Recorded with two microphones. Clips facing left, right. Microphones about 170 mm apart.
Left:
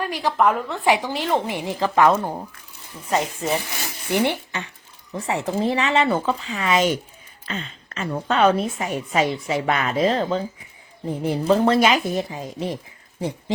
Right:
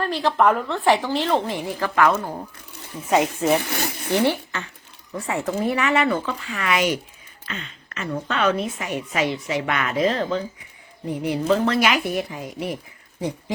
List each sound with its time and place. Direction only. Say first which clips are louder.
0.0 s a woman's voice: right 2 dB; 15° left (ahead or behind)
0.3 s speech: even; centre (ahead or behind)
0.9 s a woman's voice: right 1 dB; 15° left (ahead or behind)
3.1 s speech: right 4 dB; centre (ahead or behind)
3.6 s speech: right 6 dB; 65° right (ahead or behind)
4.1 s a woman's voice: right 1 dB; 15° left (ahead or behind)
7.4 s a woman's voice: left 4 dB; 35° left (ahead or behind)